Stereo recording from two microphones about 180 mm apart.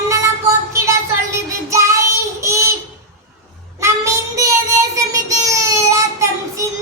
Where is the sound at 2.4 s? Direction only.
15° right (ahead or behind).